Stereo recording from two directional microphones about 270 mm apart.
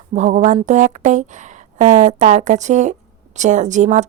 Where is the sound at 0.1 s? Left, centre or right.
Right.